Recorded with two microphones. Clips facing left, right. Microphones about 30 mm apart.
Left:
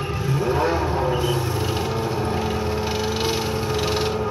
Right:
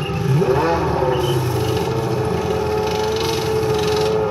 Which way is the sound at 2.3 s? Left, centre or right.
Centre.